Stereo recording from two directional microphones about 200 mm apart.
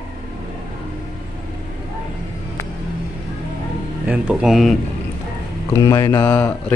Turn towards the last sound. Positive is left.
turn(degrees=10)  # may be behind; listen again after turning